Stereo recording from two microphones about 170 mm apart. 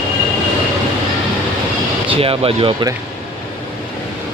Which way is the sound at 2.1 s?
35° right (ahead or behind).